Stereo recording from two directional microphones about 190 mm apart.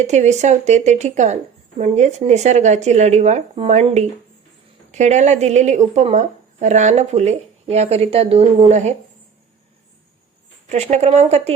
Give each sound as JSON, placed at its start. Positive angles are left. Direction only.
{"t": 0.0, "sound": "speech", "side_deg": -35}
{"t": 10.7, "sound": "speech", "side_deg": -35}